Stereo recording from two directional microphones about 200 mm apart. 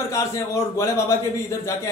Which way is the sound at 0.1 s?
15° left (ahead or behind).